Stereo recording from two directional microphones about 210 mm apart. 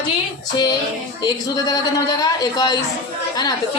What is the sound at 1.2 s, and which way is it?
A woman's voice, 15° left (ahead or behind).